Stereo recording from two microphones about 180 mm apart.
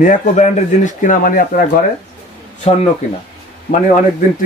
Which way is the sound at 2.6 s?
35° left (ahead or behind).